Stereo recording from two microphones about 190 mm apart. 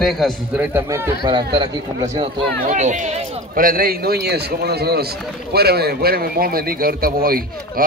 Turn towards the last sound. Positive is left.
turn(degrees=-50)  # may be behind; listen again after turning